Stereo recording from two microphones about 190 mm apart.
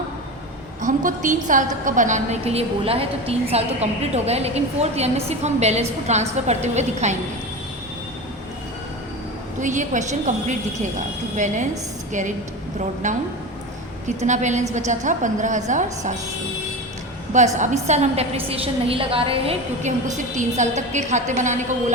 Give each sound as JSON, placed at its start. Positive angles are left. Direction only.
{"t": 0.8, "sound": "a woman's voice", "side_deg": -45}
{"t": 9.6, "sound": "a woman's voice", "side_deg": -40}
{"t": 11.3, "sound": "a woman's voice", "side_deg": -40}
{"t": 13.0, "sound": "a woman's voice", "side_deg": -40}
{"t": 17.3, "sound": "a woman's voice", "side_deg": -40}